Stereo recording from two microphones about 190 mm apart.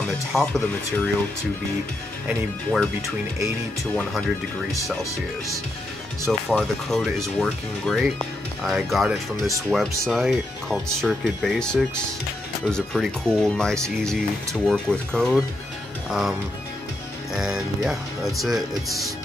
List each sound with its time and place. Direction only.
0.3 s speech: centre (ahead or behind)
2.2 s speech: centre (ahead or behind)
3.9 s speech: 5° left (ahead or behind)
6.5 s speech: centre (ahead or behind)